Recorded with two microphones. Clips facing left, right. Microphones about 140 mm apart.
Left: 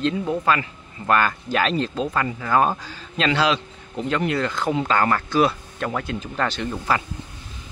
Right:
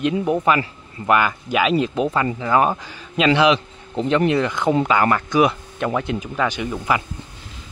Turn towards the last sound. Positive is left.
turn(degrees=-10)  # may be behind; listen again after turning